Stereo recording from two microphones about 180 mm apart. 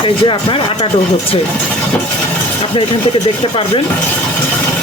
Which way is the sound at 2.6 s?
30° left (ahead or behind).